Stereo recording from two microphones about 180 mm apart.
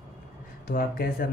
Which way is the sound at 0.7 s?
50° left (ahead or behind).